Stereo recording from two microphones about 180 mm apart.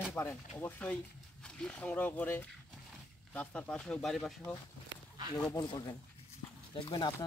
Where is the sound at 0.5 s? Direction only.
10° left (ahead or behind).